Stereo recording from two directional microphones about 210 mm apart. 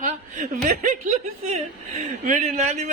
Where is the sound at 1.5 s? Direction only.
30° right (ahead or behind).